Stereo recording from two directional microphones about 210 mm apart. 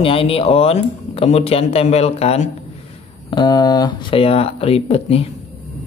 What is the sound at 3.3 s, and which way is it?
Speech, 20° left (ahead or behind).